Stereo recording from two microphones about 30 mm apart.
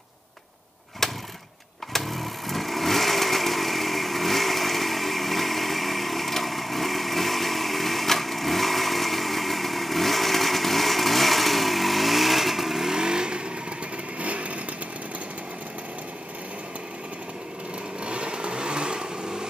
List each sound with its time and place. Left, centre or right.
1.0 s vehicle: centre
1.9 s chainsaw: centre
12.9 s vehicle: right
14.2 s vehicle: right
18.0 s vehicle: right